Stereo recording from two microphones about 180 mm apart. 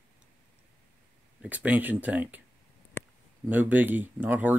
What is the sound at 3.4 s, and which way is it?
Speech, 10° right (ahead or behind).